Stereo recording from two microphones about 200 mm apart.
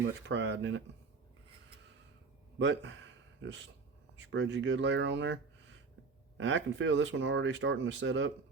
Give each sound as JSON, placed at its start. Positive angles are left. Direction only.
{"t": 0.3, "sound": "speech", "side_deg": -60}
{"t": 2.6, "sound": "speech", "side_deg": -60}